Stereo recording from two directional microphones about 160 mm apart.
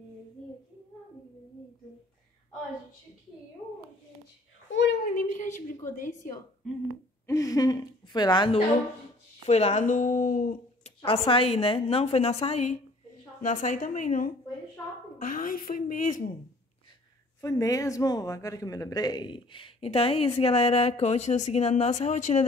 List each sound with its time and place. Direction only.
4.8 s a sound: 60° left (ahead or behind)
5.9 s speech: 55° left (ahead or behind)
7.2 s a woman's voice: 20° left (ahead or behind)
9.5 s speech: 40° left (ahead or behind); by 10.6 s 60° left (ahead or behind)
11.0 s a woman's voice: 35° left (ahead or behind); by 16.3 s 55° left (ahead or behind)
17.4 s speech: 20° left (ahead or behind); by 22.4 s 45° left (ahead or behind)